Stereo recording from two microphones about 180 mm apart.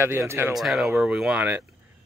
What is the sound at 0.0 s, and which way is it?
Speech, 15° right (ahead or behind).